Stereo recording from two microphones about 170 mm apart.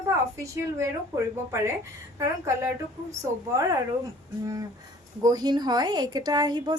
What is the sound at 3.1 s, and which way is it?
A woman's voice, 20° right (ahead or behind).